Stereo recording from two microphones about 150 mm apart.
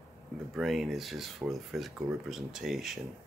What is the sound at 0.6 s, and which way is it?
Speech, centre (ahead or behind).